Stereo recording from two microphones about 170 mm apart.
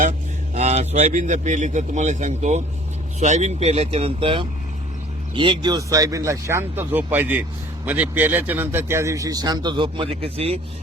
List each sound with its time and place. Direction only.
0.5 s a man's voice: 40° right (ahead or behind)